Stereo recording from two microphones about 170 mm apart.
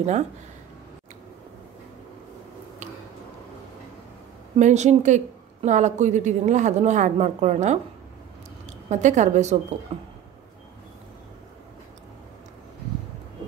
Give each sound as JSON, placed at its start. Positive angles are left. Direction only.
{"t": 4.6, "sound": "a woman's voice", "side_deg": -45}
{"t": 8.8, "sound": "a woman's voice", "side_deg": -45}